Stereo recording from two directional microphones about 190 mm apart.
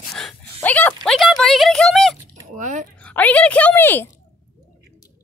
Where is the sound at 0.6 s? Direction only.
10° left (ahead or behind).